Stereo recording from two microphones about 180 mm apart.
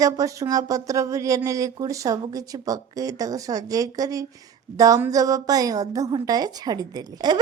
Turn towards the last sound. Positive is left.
turn(degrees=-20)  # may be behind; listen again after turning